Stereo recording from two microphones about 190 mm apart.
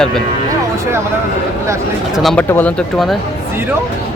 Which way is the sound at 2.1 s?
Centre (ahead or behind).